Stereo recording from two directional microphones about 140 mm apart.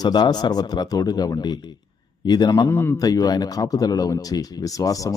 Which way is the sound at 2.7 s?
15° left (ahead or behind).